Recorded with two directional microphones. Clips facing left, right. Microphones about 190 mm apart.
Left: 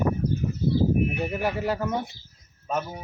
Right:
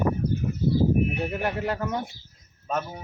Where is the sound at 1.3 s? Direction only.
5° left (ahead or behind).